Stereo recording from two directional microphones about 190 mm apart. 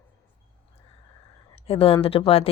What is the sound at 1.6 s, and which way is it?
Speech, 30° left (ahead or behind).